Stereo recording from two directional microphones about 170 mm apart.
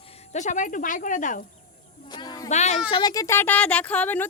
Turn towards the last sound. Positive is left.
turn(degrees=10)  # may be behind; listen again after turning